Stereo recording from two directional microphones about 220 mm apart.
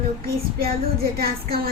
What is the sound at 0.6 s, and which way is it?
Child singing, 45° right (ahead or behind).